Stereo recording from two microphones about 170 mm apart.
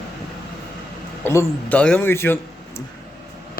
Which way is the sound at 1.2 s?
15° left (ahead or behind).